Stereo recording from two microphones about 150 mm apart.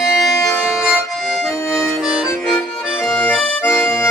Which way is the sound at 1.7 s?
5° right (ahead or behind).